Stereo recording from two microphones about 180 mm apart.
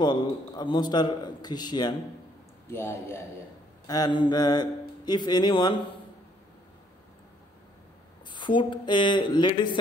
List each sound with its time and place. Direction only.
0.0 s a man's voice: 25° left (ahead or behind)
2.7 s a man's voice: 15° left (ahead or behind)
8.3 s a man's voice: 25° left (ahead or behind)